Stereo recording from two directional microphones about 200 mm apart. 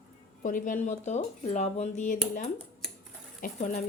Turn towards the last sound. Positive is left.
turn(degrees=40)  # may be behind; listen again after turning